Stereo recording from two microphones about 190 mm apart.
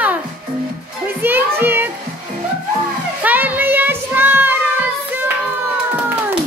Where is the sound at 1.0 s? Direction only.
10° right (ahead or behind).